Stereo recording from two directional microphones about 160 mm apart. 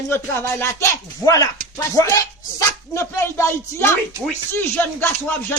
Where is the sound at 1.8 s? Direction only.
20° left (ahead or behind).